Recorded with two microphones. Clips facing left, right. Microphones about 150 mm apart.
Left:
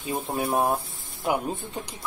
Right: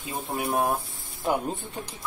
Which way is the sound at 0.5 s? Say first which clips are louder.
Left 1 dB; 20° left (ahead or behind).